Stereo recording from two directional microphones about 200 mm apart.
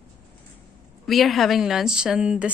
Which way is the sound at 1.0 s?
Centre (ahead or behind).